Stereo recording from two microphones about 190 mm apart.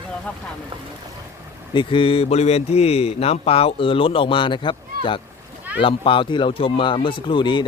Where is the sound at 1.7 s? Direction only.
25° left (ahead or behind).